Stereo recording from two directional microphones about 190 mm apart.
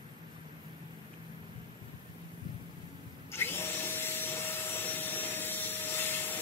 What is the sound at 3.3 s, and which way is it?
Vacuum cleaner, 10° left (ahead or behind).